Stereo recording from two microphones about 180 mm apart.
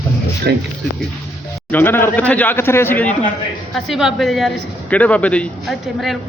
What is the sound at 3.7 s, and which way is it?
A woman's voice, centre (ahead or behind).